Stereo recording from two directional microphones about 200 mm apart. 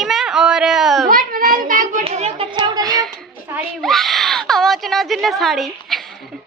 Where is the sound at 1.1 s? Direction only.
45° right (ahead or behind); by 2.8 s 20° right (ahead or behind).